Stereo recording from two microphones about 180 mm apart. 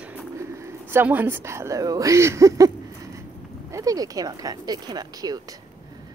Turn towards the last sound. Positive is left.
turn(degrees=-20)  # may be behind; listen again after turning